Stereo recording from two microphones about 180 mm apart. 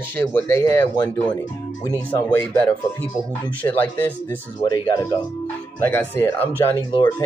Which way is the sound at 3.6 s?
10° left (ahead or behind).